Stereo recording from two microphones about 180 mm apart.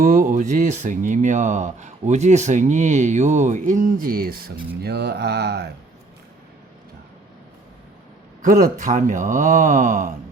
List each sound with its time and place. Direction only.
0.0 s speech: 45° right (ahead or behind); by 5.7 s 65° right (ahead or behind)
8.4 s speech: 50° right (ahead or behind)